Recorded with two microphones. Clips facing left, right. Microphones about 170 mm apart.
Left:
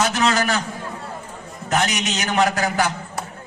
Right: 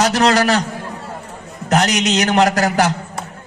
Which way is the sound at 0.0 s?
40° right (ahead or behind).